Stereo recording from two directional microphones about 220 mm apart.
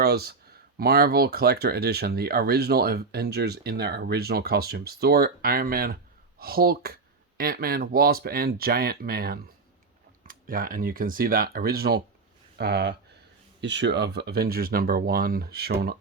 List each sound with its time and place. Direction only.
0.0 s speech: 45° right (ahead or behind)